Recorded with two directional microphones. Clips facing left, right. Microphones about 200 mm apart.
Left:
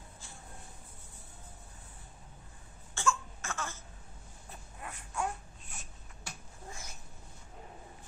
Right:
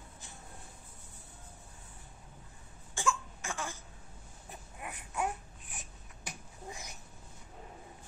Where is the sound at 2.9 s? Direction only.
15° right (ahead or behind).